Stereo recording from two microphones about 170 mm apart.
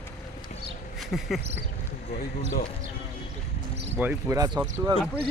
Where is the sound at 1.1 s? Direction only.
Centre (ahead or behind).